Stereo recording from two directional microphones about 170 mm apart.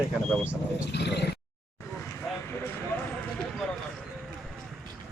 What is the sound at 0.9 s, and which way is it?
Speech, 75° left (ahead or behind).